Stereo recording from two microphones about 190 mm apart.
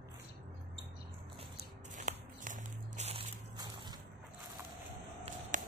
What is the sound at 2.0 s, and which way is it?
Walk, 40° right (ahead or behind).